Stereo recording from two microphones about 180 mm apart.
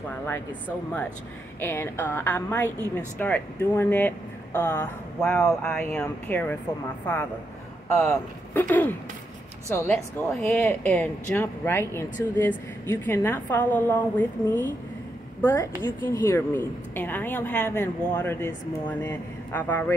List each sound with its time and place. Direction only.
1.6 s speech: 15° left (ahead or behind)
8.0 s speech: 5° left (ahead or behind)
9.9 s speech: 5° left (ahead or behind)